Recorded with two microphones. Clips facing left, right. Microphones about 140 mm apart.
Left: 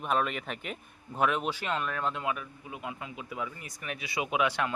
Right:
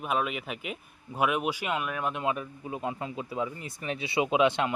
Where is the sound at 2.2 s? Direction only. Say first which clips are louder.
Right 4 dB; 30° right (ahead or behind).